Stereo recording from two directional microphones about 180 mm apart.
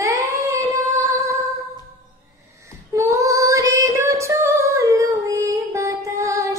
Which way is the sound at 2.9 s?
15° right (ahead or behind).